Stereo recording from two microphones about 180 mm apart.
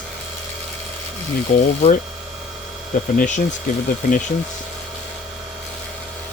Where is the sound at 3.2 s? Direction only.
40° left (ahead or behind).